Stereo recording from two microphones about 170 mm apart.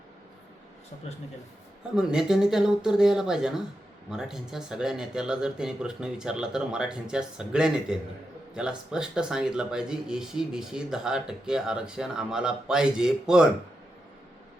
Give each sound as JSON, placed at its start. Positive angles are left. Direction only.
{"t": 2.0, "sound": "speech", "side_deg": -5}